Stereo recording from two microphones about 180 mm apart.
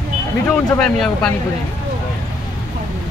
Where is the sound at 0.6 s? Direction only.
5° left (ahead or behind).